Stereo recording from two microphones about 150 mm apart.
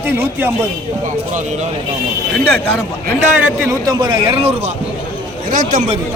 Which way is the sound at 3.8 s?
30° right (ahead or behind).